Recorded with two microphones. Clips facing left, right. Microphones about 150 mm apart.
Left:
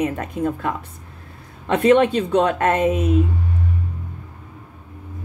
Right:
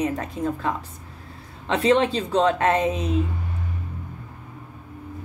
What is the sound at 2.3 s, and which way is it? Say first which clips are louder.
Speech: left 2 dB; 55° left (ahead or behind).